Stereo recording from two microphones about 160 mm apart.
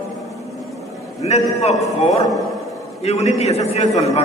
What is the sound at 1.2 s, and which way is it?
Speech, 40° left (ahead or behind).